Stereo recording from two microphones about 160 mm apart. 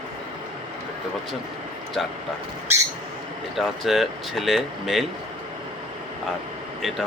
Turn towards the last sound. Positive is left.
turn(degrees=0)  # may be behind; listen again after turning